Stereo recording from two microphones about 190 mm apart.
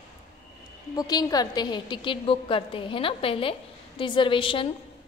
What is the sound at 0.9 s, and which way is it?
A woman's voice, 20° left (ahead or behind).